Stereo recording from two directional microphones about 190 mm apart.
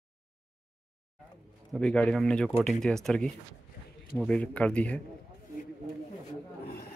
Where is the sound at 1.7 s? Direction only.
5° left (ahead or behind).